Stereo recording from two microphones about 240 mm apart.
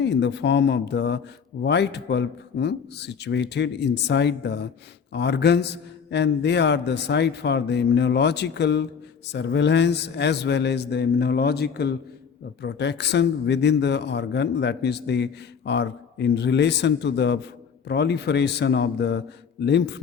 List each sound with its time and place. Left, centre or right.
0.0 s a man's voice: left